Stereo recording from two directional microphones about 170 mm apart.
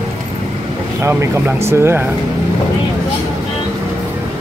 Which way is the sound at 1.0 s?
15° right (ahead or behind).